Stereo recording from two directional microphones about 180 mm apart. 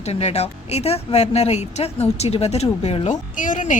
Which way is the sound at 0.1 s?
35° left (ahead or behind).